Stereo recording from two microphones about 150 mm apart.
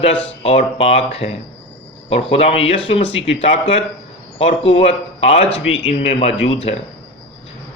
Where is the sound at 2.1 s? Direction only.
40° left (ahead or behind).